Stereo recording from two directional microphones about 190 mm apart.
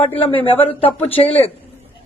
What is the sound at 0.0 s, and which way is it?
A woman's voice, 30° left (ahead or behind).